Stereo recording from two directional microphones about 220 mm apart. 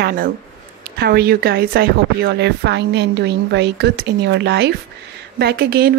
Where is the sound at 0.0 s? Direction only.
45° right (ahead or behind).